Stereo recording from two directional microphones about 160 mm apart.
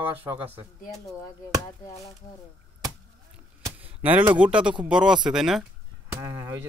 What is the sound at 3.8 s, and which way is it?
A man's voice, 10° right (ahead or behind).